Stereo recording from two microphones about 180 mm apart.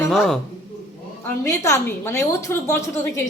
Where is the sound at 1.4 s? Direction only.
15° left (ahead or behind).